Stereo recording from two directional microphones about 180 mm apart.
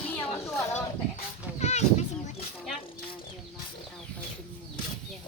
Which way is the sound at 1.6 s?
40° left (ahead or behind).